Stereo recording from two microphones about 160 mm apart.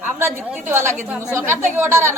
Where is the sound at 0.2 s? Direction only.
15° right (ahead or behind).